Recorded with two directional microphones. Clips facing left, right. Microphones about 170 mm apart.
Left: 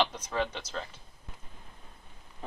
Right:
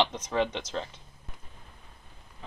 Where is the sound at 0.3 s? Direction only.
20° right (ahead or behind).